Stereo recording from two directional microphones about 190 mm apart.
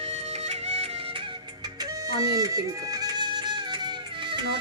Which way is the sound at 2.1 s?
20° right (ahead or behind).